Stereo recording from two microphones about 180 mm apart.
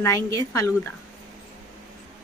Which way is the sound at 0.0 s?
20° left (ahead or behind).